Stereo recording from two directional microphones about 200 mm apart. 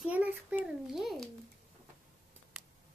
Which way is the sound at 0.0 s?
10° right (ahead or behind).